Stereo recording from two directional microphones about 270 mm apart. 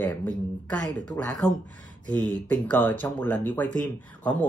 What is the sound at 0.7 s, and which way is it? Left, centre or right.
Speech, centre.